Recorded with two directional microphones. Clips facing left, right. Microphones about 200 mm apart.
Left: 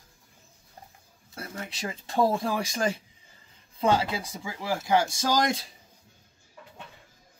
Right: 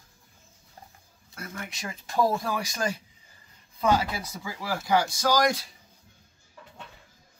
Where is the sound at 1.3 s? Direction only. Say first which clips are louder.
Left 1 dB; 30° left (ahead or behind).